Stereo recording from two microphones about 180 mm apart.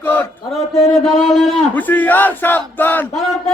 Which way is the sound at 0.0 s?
10° left (ahead or behind).